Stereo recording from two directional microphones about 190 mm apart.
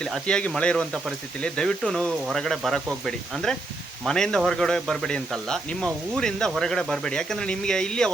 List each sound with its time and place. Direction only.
0.0 s speech: 5° left (ahead or behind)